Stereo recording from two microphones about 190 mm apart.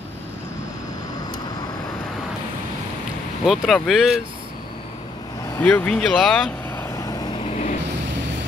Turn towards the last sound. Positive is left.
turn(degrees=35)  # may be behind; listen again after turning